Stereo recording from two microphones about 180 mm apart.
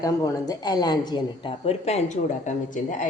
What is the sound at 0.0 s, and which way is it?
A woman's voice, 20° left (ahead or behind).